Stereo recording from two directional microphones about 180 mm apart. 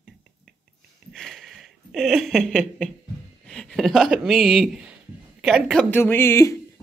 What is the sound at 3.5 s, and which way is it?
Speech, 5° left (ahead or behind).